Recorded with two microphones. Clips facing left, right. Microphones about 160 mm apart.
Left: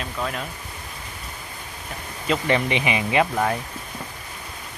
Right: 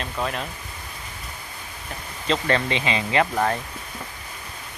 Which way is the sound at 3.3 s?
Centre (ahead or behind).